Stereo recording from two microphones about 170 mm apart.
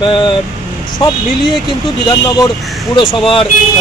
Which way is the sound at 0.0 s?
30° left (ahead or behind).